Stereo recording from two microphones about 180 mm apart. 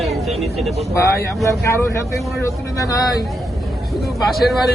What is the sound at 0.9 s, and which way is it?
Speech, 15° left (ahead or behind).